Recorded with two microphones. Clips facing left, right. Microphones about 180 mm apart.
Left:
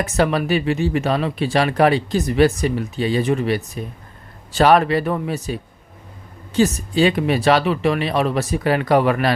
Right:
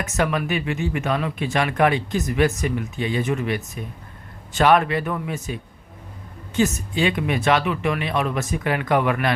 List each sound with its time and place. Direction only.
0.0 s speech: 35° left (ahead or behind)